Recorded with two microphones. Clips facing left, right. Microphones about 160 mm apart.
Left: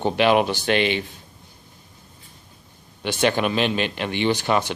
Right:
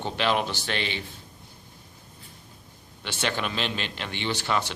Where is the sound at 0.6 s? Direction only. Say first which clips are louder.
Left 10 dB; 60° left (ahead or behind).